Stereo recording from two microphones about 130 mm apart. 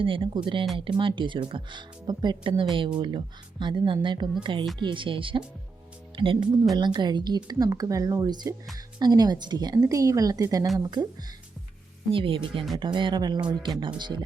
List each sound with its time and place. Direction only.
0.0 s speech: 40° right (ahead or behind)
12.1 s speech: 45° right (ahead or behind)